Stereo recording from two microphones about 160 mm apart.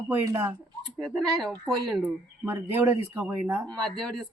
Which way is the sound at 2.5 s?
10° right (ahead or behind).